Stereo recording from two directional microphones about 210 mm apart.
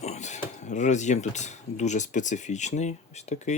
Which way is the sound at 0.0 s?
35° left (ahead or behind).